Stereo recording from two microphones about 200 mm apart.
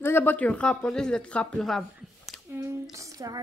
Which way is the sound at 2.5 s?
15° right (ahead or behind).